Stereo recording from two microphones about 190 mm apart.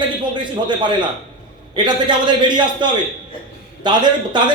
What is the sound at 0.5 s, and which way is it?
A man's voice, 25° right (ahead or behind).